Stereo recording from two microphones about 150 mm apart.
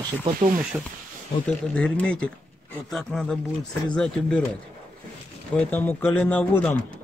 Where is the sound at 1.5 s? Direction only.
5° left (ahead or behind).